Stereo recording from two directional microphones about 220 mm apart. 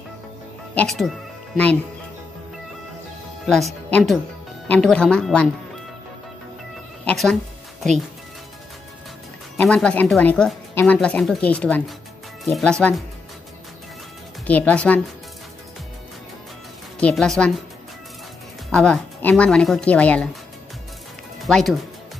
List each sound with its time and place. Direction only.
0.7 s speech: centre (ahead or behind)
3.4 s speech: centre (ahead or behind)
7.1 s speech: 5° left (ahead or behind)
9.6 s speech: 5° left (ahead or behind)
14.4 s speech: 5° left (ahead or behind)
17.0 s speech: centre (ahead or behind)
18.7 s speech: 5° left (ahead or behind)
21.4 s speech: centre (ahead or behind)